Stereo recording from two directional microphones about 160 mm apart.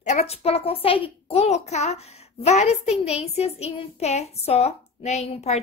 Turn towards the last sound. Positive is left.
turn(degrees=45)  # may be behind; listen again after turning